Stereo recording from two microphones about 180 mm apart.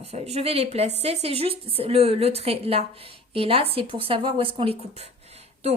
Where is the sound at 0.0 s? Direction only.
35° right (ahead or behind).